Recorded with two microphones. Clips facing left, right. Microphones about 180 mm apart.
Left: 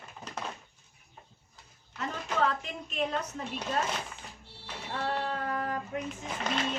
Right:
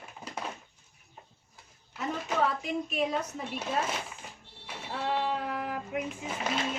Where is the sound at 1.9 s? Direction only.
10° right (ahead or behind).